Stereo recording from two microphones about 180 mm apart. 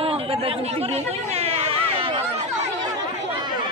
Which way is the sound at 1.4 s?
35° right (ahead or behind).